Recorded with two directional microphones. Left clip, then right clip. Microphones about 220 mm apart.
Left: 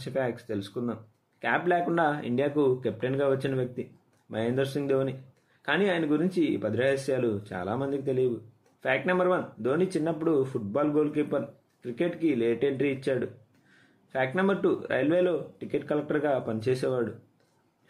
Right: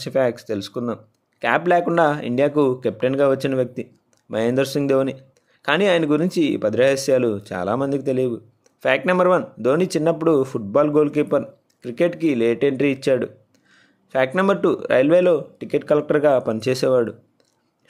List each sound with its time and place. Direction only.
0.0 s speech: 50° right (ahead or behind)